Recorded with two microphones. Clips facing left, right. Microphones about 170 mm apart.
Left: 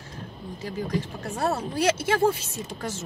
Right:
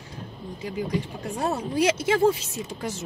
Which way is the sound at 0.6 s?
15° right (ahead or behind).